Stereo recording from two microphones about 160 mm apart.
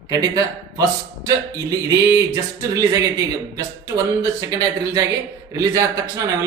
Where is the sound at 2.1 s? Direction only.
20° right (ahead or behind).